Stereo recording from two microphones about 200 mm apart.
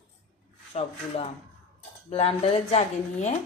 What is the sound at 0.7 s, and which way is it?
A woman's voice, 30° left (ahead or behind).